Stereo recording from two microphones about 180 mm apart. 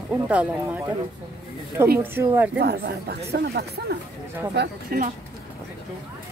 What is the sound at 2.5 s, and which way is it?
Speech, 65° right (ahead or behind).